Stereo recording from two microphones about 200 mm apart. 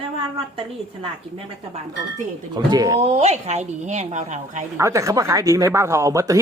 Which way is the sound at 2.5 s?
20° right (ahead or behind).